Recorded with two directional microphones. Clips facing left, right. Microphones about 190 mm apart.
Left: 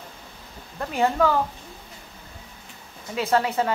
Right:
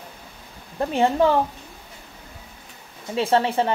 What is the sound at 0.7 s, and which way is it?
Speech, 25° right (ahead or behind).